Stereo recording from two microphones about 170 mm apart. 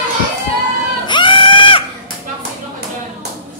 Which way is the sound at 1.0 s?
30° left (ahead or behind).